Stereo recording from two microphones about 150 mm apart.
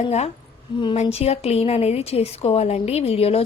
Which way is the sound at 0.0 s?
45° left (ahead or behind).